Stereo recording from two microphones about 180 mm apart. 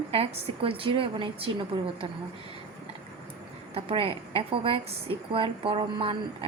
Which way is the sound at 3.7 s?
30° right (ahead or behind).